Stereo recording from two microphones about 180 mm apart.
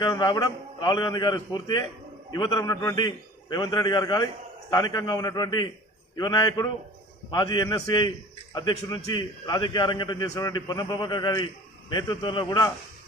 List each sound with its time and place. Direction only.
0.0 s a man's voice: 25° left (ahead or behind)